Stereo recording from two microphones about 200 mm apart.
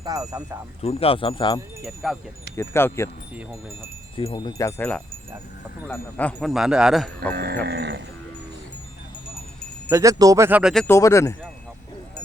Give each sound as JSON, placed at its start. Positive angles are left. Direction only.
{"t": 0.0, "sound": "speech", "side_deg": -15}
{"t": 0.8, "sound": "speech", "side_deg": 30}
{"t": 1.8, "sound": "speech", "side_deg": 0}
{"t": 2.6, "sound": "wind chime", "side_deg": 15}
{"t": 4.2, "sound": "wind chime", "side_deg": 25}
{"t": 5.9, "sound": "speech", "side_deg": 10}
{"t": 7.3, "sound": "livestock", "side_deg": -55}
{"t": 9.9, "sound": "speech", "side_deg": -15}
{"t": 10.8, "sound": "wind chime", "side_deg": 15}